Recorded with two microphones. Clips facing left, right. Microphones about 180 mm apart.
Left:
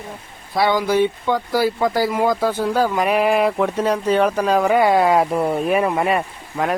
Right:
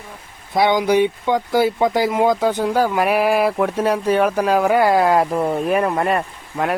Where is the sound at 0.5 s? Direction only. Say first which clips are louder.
Right 2 dB; 20° right (ahead or behind).